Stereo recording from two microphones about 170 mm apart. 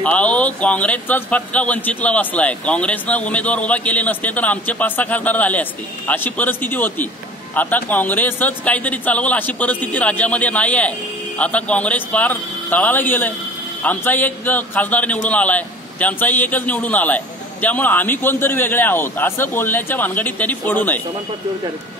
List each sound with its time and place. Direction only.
0.0 s a man's voice: 10° left (ahead or behind)